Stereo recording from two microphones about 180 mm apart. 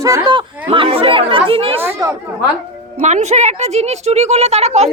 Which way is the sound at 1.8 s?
15° right (ahead or behind).